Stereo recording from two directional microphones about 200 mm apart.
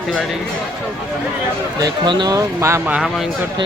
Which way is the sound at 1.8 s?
20° right (ahead or behind).